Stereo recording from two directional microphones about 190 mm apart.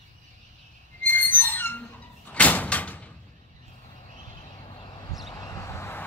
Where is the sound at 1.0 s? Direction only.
10° left (ahead or behind).